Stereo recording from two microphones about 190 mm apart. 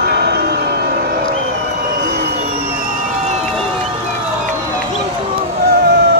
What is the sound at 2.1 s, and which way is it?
Vehicle, 55° right (ahead or behind).